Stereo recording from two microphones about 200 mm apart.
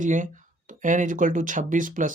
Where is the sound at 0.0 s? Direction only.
40° right (ahead or behind).